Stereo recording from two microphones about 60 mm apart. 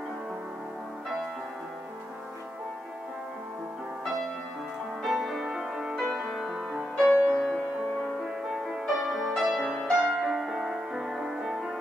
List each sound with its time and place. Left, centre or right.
5.0 s music: centre
7.1 s music: centre
8.2 s music: centre